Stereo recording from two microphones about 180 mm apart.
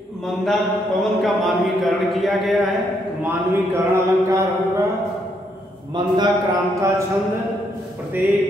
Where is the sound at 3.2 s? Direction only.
15° right (ahead or behind).